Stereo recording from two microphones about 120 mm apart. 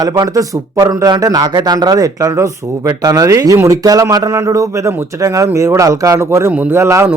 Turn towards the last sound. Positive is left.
turn(degrees=-20)  # may be behind; listen again after turning